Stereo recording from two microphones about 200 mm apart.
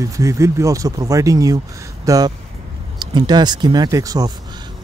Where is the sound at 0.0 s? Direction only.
15° right (ahead or behind).